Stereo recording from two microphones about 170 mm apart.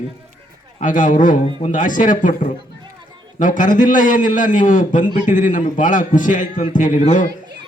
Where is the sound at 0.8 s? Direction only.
50° left (ahead or behind).